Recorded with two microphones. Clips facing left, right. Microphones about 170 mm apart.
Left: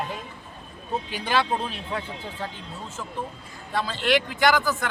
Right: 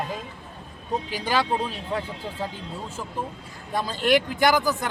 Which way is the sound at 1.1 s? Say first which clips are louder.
Even; 35° right (ahead or behind).